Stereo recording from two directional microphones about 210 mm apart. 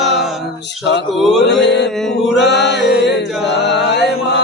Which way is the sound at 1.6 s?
55° left (ahead or behind).